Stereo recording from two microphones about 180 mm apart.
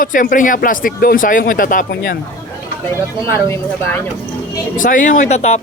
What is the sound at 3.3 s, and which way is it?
Speech, 15° left (ahead or behind).